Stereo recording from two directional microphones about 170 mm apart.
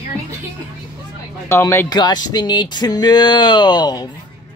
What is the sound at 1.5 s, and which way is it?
Speech, 15° left (ahead or behind).